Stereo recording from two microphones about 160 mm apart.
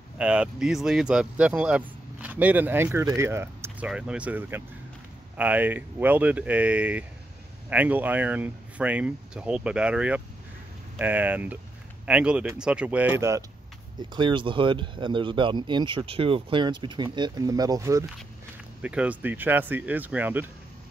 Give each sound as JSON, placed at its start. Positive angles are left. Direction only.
{"t": 0.2, "sound": "speech", "side_deg": -5}
{"t": 14.1, "sound": "speech", "side_deg": -30}
{"t": 18.8, "sound": "speech", "side_deg": -5}